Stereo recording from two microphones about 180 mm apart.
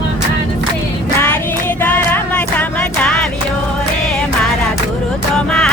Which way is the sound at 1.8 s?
10° left (ahead or behind).